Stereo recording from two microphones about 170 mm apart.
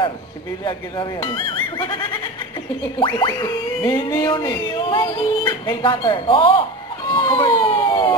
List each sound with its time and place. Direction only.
0.7 s speech: 25° left (ahead or behind)
3.0 s speech: 25° left (ahead or behind)
7.1 s a sound: 30° left (ahead or behind)